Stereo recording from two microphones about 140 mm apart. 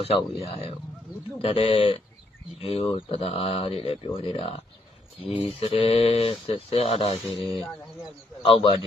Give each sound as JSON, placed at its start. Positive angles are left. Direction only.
{"t": 0.3, "sound": "speech", "side_deg": 45}
{"t": 7.3, "sound": "speech", "side_deg": 0}
{"t": 8.4, "sound": "a man's voice", "side_deg": 40}